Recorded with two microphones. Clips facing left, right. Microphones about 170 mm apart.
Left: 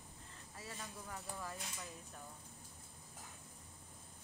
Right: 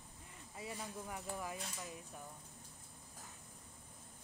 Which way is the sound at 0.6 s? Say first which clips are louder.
Right 5 dB; 15° right (ahead or behind).